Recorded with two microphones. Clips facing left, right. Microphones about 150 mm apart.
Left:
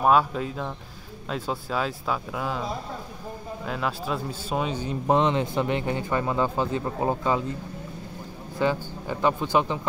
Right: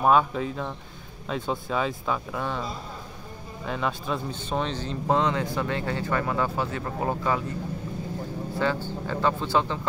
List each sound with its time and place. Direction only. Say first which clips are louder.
0.0 s speech: even; centre (ahead or behind)
3.6 s speech: right 1 dB; centre (ahead or behind); by 7.4 s 20° left (ahead or behind)
8.8 s speech: left 1 dB; 15° left (ahead or behind)